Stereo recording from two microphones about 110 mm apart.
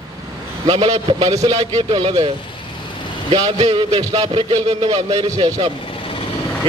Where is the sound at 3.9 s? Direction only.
75° right (ahead or behind).